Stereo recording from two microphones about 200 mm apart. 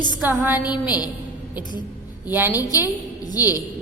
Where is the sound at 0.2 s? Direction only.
10° right (ahead or behind).